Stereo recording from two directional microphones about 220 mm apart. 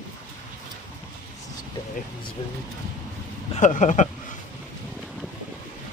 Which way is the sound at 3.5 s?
35° left (ahead or behind).